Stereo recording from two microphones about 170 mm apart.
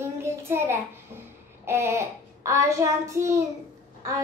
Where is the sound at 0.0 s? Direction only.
15° right (ahead or behind).